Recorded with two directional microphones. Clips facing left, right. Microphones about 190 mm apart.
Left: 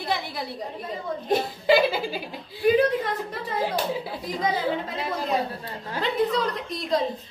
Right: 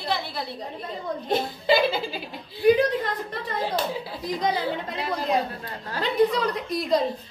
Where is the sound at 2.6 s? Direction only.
5° left (ahead or behind).